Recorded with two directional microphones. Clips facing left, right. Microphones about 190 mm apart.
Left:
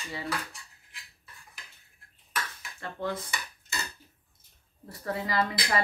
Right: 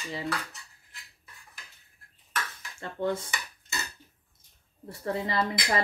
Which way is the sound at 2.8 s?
25° right (ahead or behind).